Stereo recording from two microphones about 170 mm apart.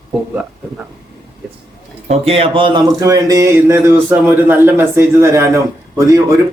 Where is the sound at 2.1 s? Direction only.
35° right (ahead or behind); by 6.2 s 20° right (ahead or behind).